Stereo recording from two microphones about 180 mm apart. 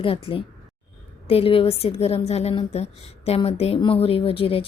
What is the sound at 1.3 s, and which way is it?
A woman's voice, 30° left (ahead or behind).